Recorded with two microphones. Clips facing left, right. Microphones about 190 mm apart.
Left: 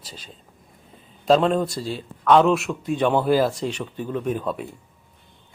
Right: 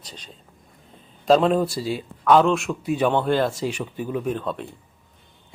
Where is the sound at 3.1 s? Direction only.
5° left (ahead or behind).